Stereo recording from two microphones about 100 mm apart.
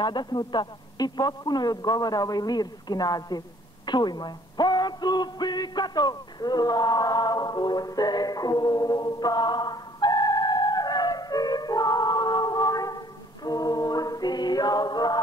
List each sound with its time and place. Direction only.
0.0 s a man's voice: 45° left (ahead or behind)